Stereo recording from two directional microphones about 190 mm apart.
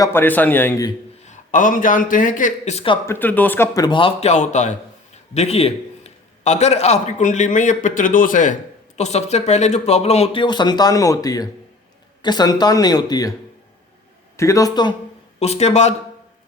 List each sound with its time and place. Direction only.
0.0 s a man's voice: 10° left (ahead or behind)
1.3 s speech: 40° left (ahead or behind)
3.1 s a man's voice: 10° left (ahead or behind)
14.3 s a man's voice: 15° left (ahead or behind)
15.4 s a man's voice: 35° left (ahead or behind)